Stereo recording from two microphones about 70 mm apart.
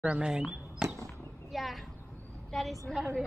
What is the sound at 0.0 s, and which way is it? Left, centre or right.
Speech, centre.